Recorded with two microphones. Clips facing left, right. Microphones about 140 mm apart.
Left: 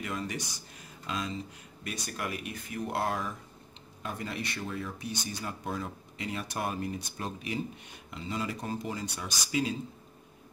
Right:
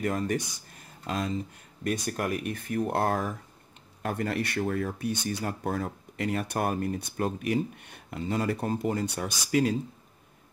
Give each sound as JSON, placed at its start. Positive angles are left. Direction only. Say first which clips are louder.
{"t": 0.0, "sound": "speech", "louder": "right 7 dB", "side_deg": -45}
{"t": 4.0, "sound": "speech", "louder": "right 7 dB", "side_deg": -60}